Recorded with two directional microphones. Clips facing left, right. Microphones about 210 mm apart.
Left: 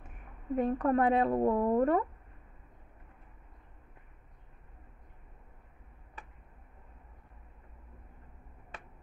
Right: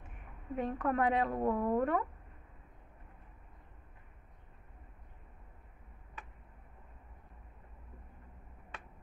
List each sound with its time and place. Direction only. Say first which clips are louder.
0.6 s a woman's voice: left 5 dB; 35° left (ahead or behind)